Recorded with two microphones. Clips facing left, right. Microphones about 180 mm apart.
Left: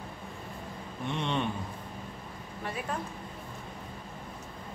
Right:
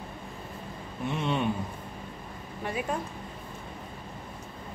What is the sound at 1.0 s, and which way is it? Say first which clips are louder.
Speech: right 3 dB; 5° right (ahead or behind).